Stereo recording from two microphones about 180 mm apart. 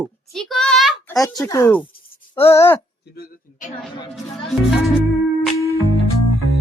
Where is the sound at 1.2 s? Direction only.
20° left (ahead or behind).